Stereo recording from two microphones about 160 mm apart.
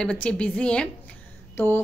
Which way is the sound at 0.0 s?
5° left (ahead or behind).